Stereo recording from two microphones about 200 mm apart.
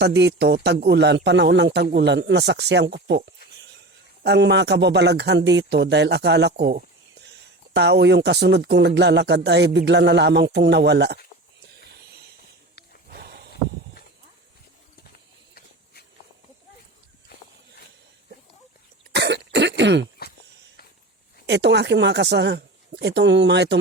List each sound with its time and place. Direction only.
0.0 s speech: 60° right (ahead or behind)
11.9 s hiss: 55° right (ahead or behind)
13.1 s a sound: 50° right (ahead or behind)
19.1 s cough: 60° right (ahead or behind)
21.4 s speech: 60° right (ahead or behind)